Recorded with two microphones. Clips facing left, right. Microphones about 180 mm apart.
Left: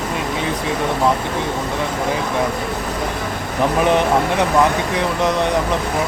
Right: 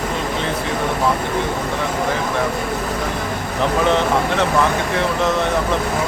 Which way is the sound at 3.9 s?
15° left (ahead or behind).